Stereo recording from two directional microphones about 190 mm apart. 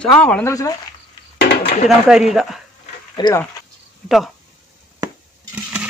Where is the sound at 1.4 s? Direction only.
60° left (ahead or behind).